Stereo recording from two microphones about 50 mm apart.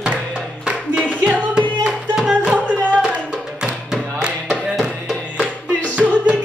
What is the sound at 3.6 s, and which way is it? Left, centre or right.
Music, centre.